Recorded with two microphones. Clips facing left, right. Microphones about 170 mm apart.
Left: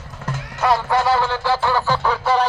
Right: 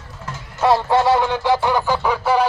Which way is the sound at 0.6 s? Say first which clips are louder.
Right 3 dB; 25° right (ahead or behind).